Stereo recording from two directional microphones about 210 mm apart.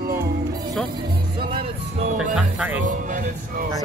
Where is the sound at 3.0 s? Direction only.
35° right (ahead or behind).